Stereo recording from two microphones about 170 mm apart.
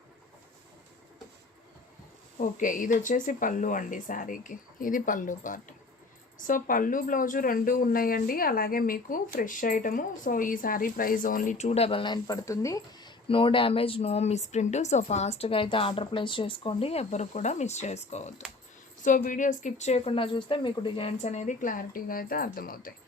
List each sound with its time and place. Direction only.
2.4 s a woman's voice: 50° left (ahead or behind)